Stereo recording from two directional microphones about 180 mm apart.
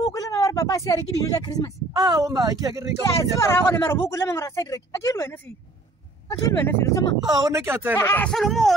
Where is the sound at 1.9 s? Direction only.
20° right (ahead or behind).